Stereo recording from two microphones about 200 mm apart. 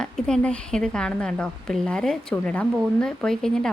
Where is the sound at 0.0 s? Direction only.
5° left (ahead or behind).